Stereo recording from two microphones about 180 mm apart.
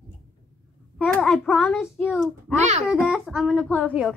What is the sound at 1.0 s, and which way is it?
Speech, 5° left (ahead or behind).